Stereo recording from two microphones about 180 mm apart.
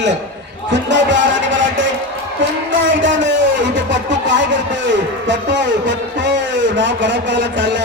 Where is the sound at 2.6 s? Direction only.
90° right.